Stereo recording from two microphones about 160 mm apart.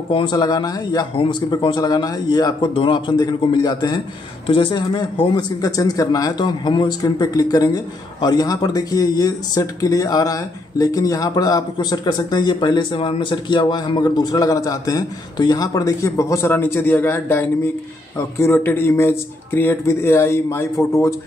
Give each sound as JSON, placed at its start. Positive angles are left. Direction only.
{"t": 0.1, "sound": "a man's voice", "side_deg": 25}